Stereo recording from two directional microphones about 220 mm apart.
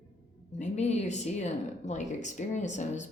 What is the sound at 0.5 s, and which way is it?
Speech, 30° left (ahead or behind).